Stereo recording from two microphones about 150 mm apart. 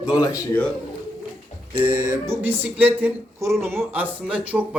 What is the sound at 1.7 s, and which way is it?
Music, 30° right (ahead or behind).